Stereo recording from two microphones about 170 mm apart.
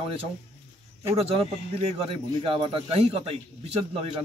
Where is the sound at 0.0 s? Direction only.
35° right (ahead or behind).